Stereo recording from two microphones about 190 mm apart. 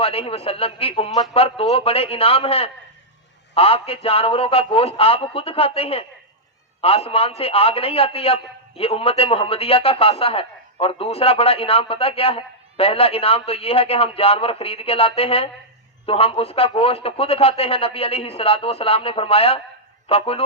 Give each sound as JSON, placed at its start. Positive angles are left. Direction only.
{"t": 0.0, "sound": "a man's voice", "side_deg": 30}